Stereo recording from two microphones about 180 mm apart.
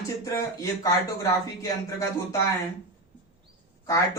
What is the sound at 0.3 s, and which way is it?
Speech, 20° left (ahead or behind).